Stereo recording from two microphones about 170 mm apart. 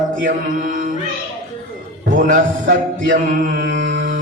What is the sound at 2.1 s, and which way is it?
Mantra, 50° right (ahead or behind).